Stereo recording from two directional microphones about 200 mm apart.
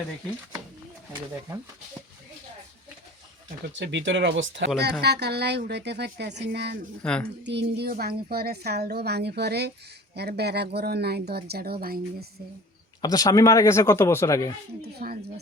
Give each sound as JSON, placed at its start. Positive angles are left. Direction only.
{"t": 3.7, "sound": "a woman's voice", "side_deg": -65}
{"t": 4.8, "sound": "a woman's voice", "side_deg": -55}
{"t": 7.0, "sound": "speech", "side_deg": 5}
{"t": 7.4, "sound": "a woman's voice", "side_deg": -55}
{"t": 13.0, "sound": "speech", "side_deg": 20}
{"t": 14.8, "sound": "speech", "side_deg": -50}